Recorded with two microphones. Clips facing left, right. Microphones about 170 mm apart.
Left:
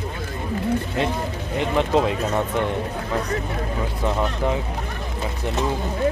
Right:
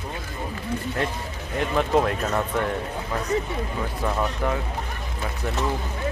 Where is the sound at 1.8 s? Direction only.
20° left (ahead or behind).